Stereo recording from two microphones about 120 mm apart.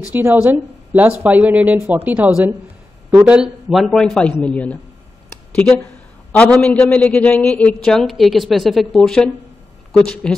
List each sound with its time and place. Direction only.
0.1 s a man's voice: 20° right (ahead or behind); by 4.7 s 10° left (ahead or behind)
6.3 s a man's voice: 10° left (ahead or behind)